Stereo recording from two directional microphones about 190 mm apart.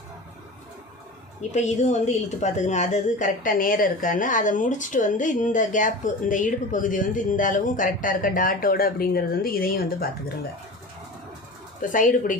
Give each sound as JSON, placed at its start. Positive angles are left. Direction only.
{"t": 1.4, "sound": "a woman's voice", "side_deg": 40}
{"t": 11.8, "sound": "speech", "side_deg": 45}